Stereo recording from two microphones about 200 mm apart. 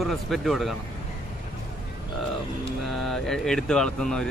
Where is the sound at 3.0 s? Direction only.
Centre (ahead or behind).